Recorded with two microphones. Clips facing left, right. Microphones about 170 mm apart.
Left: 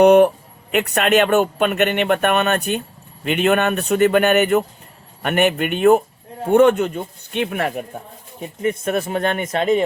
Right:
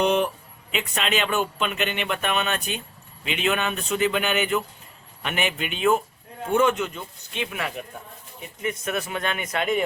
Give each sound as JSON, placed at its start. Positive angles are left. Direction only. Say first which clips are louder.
{"t": 0.0, "sound": "speech", "louder": "left 11 dB", "side_deg": 60}
{"t": 8.7, "sound": "speech", "louder": "left 7 dB", "side_deg": 50}